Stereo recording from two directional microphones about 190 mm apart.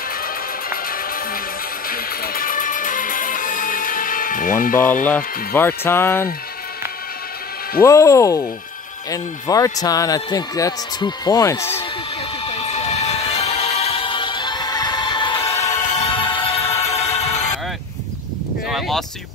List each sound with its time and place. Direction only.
0.2 s music: 50° left (ahead or behind)
5.0 s speech: 10° left (ahead or behind)
7.8 s speech: 15° left (ahead or behind)
12.4 s music: 35° left (ahead or behind)
18.7 s speech: centre (ahead or behind)